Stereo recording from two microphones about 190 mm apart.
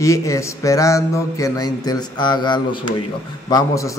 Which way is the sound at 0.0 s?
15° left (ahead or behind).